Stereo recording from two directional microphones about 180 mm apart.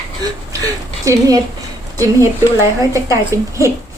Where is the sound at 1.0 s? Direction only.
20° right (ahead or behind).